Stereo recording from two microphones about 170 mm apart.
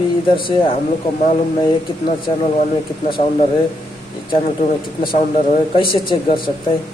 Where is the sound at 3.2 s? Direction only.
40° left (ahead or behind).